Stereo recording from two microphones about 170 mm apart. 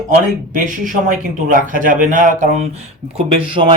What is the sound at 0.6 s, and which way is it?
Speech, 50° right (ahead or behind).